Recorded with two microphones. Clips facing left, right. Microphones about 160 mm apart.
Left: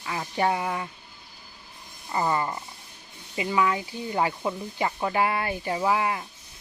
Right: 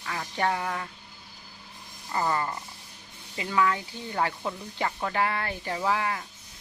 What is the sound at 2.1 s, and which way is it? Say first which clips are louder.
Speech: left 2 dB; 15° left (ahead or behind).